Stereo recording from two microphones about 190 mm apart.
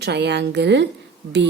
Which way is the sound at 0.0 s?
65° right (ahead or behind).